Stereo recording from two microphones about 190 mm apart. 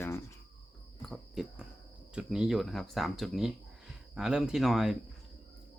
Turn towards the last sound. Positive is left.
turn(degrees=0)  # may be behind; listen again after turning